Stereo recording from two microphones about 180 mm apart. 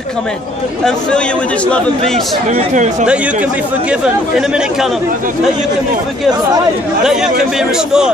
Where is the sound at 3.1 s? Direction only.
5° right (ahead or behind).